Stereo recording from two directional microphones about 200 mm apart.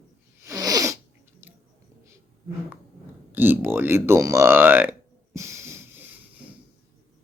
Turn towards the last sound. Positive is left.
turn(degrees=-10)  # may be behind; listen again after turning